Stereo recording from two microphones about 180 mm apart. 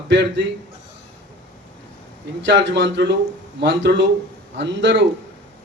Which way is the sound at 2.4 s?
80° right.